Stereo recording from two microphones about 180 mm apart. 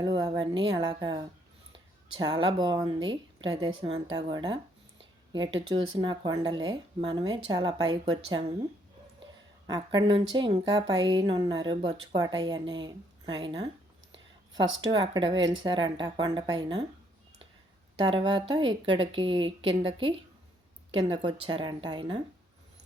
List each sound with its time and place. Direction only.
0.0 s a woman's voice: 25° right (ahead or behind)
9.6 s a woman's voice: 20° right (ahead or behind)
18.0 s a woman's voice: 25° right (ahead or behind)